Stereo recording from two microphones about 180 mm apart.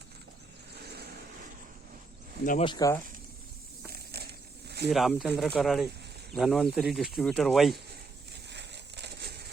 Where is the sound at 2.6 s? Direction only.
20° left (ahead or behind).